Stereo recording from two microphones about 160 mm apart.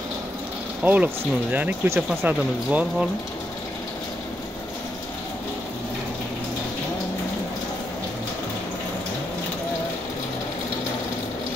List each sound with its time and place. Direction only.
0.8 s speech: 10° right (ahead or behind)